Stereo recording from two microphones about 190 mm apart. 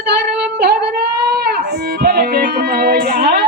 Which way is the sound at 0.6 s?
55° right (ahead or behind).